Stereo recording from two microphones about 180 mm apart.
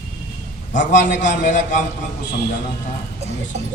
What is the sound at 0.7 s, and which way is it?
A man's voice, 45° left (ahead or behind).